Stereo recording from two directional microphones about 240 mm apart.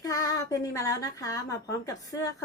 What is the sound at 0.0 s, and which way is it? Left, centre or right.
A woman's voice, centre.